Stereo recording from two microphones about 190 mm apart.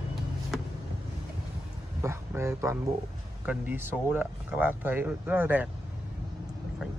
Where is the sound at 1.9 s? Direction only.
15° right (ahead or behind).